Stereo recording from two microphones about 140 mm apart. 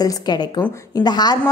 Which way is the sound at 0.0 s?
30° left (ahead or behind).